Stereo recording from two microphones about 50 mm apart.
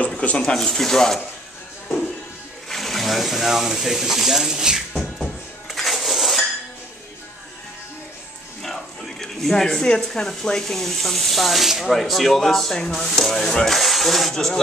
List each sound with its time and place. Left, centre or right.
0.0 s a sound: left
0.6 s speech: centre
2.7 s speech: centre
4.9 s music: centre
8.6 s speech: centre
13.7 s speech: centre